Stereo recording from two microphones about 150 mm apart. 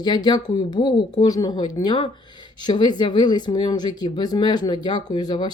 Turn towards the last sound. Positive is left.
turn(degrees=30)  # may be behind; listen again after turning